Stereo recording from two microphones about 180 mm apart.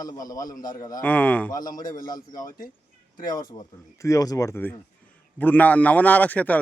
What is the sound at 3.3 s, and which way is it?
A man's voice, 25° left (ahead or behind).